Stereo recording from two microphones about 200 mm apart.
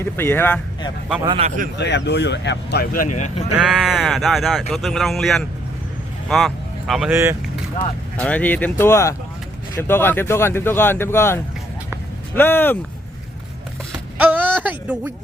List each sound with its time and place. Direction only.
0.0 s speech: 10° left (ahead or behind)
1.2 s a man's voice: 25° right (ahead or behind)
1.5 s speech: 40° right (ahead or behind)
1.7 s speech: 60° left (ahead or behind); by 3.4 s 35° left (ahead or behind)
3.6 s speech: centre (ahead or behind)
6.2 s vehicle: centre (ahead or behind)
7.1 s speech: 15° right (ahead or behind)
8.1 s speech: 5° left (ahead or behind)
14.2 s a sound: 10° right (ahead or behind)